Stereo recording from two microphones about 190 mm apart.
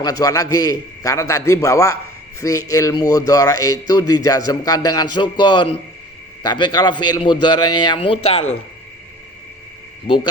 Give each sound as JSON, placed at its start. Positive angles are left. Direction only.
{"t": 0.0, "sound": "a man's voice", "side_deg": 20}